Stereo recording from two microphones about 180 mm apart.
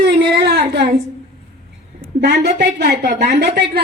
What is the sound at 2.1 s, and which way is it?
A woman's voice, 65° right (ahead or behind).